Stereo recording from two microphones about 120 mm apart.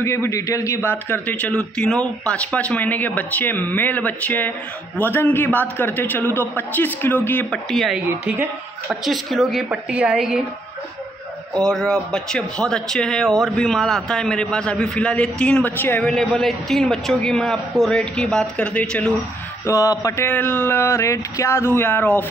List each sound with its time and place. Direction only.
0.0 s a man's voice: 20° left (ahead or behind)
7.7 s a man's voice: centre (ahead or behind)
9.0 s a man's voice: centre (ahead or behind)
11.5 s a man's voice: 5° left (ahead or behind)
16.0 s a man's voice: centre (ahead or behind)
19.6 s mantra: 30° left (ahead or behind)